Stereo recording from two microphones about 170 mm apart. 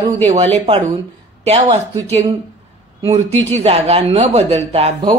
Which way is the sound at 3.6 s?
35° right (ahead or behind).